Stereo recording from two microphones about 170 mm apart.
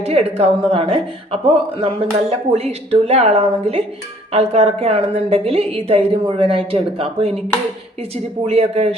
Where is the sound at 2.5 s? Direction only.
40° right (ahead or behind).